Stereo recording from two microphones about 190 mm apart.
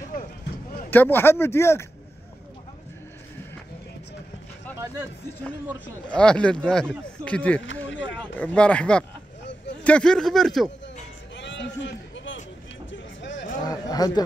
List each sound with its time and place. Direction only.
0.8 s speech: 10° left (ahead or behind)
6.1 s speech: 5° left (ahead or behind)
9.4 s a sound: 70° left (ahead or behind)
9.8 s speech: 5° left (ahead or behind)
11.3 s a sound: 70° left (ahead or behind)
12.9 s vehicle: 70° left (ahead or behind)
13.7 s speech: 20° left (ahead or behind)